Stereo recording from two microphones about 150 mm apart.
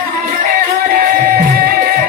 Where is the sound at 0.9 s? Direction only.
75° right (ahead or behind).